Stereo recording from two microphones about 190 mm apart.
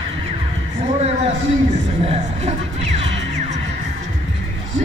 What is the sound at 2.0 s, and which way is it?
Music, 35° right (ahead or behind).